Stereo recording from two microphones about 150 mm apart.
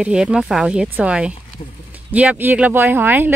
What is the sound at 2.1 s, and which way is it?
Speech, 10° right (ahead or behind).